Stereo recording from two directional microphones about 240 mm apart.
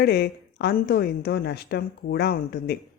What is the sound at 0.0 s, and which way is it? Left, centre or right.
A woman's voice, left.